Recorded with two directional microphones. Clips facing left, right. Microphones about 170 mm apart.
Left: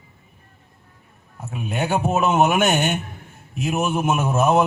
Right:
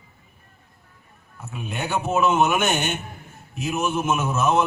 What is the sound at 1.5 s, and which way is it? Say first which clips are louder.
A man's voice: left 4 dB; 45° left (ahead or behind).